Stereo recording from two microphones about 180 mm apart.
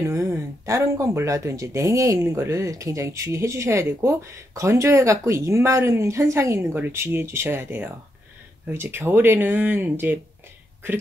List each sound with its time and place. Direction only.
0.0 s speech: 15° right (ahead or behind)